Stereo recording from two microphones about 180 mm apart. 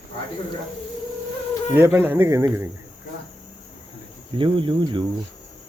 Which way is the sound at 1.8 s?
10° right (ahead or behind).